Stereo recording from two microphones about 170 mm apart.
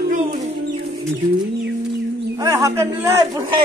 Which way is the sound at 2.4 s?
20° right (ahead or behind).